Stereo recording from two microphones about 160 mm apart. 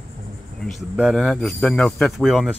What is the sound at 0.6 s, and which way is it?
Speech, centre (ahead or behind).